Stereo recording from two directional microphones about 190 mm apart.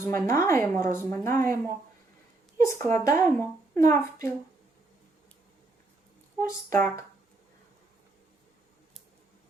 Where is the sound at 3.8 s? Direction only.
15° left (ahead or behind).